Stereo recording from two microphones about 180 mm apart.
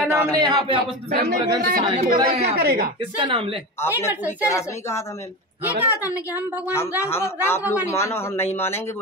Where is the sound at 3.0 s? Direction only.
30° right (ahead or behind).